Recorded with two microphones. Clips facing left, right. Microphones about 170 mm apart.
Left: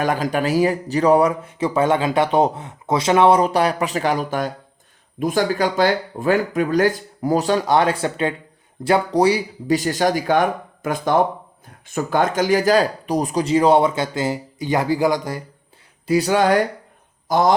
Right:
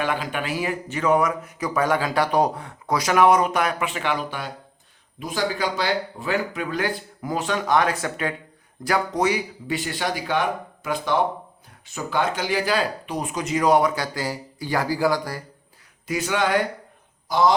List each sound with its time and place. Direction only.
0.0 s speech: 40° left (ahead or behind); by 15.4 s 20° left (ahead or behind)
16.0 s speech: 35° left (ahead or behind)